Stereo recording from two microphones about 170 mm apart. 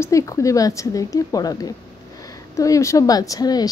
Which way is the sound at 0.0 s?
20° left (ahead or behind).